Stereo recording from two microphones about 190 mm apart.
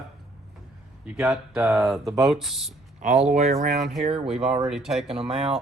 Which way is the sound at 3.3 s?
35° right (ahead or behind).